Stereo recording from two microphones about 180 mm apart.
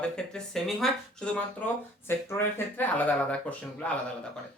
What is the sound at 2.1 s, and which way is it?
Speech, 15° left (ahead or behind).